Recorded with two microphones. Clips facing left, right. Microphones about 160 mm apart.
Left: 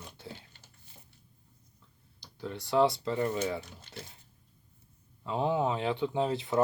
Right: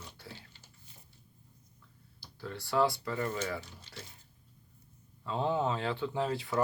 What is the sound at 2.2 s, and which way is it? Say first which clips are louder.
Speech: left 3 dB; 20° left (ahead or behind).